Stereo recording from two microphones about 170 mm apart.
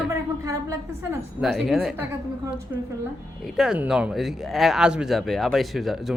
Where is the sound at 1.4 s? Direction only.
Centre (ahead or behind).